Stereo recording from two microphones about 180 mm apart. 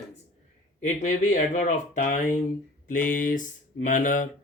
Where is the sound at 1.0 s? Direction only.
40° left (ahead or behind).